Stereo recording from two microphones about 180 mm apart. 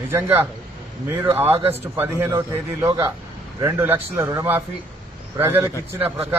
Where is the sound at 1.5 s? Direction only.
35° right (ahead or behind).